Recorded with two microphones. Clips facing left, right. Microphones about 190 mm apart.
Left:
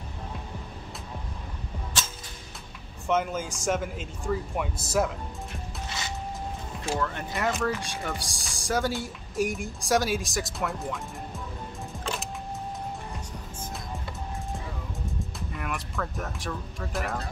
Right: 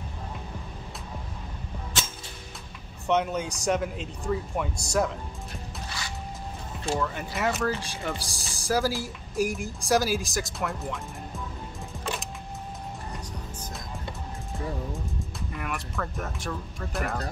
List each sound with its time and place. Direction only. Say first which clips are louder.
3.1 s speech: right 1 dB; centre (ahead or behind)
7.0 s speech: right 1 dB; 5° right (ahead or behind)
15.5 s speech: even; centre (ahead or behind)